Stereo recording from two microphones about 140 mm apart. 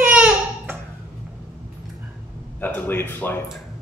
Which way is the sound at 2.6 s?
15° left (ahead or behind).